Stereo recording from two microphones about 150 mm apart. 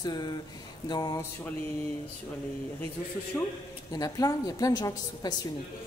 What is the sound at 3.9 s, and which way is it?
A woman's voice, 25° left (ahead or behind).